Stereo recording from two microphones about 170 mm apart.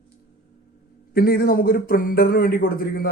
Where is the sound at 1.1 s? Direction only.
60° left (ahead or behind).